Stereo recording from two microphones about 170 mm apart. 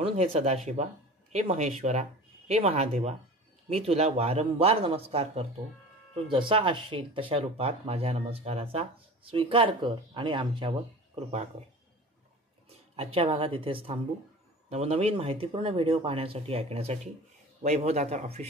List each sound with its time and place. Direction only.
0.0 s speech: 35° right (ahead or behind)
12.6 s speech: 35° right (ahead or behind)